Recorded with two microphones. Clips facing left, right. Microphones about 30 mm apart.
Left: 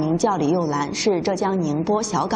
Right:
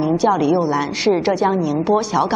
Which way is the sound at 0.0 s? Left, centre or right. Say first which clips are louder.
Right 4 dB; centre.